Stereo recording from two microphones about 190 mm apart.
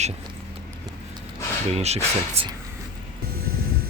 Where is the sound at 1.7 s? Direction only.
35° right (ahead or behind).